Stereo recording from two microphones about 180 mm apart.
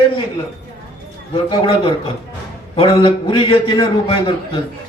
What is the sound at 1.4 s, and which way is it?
A man's voice, 30° left (ahead or behind).